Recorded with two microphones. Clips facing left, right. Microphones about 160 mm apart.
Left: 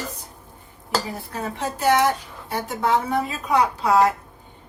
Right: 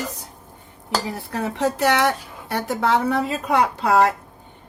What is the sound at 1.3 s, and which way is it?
Speech, 70° right (ahead or behind).